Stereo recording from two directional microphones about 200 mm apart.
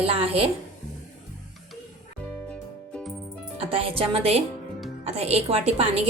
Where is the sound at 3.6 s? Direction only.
25° right (ahead or behind).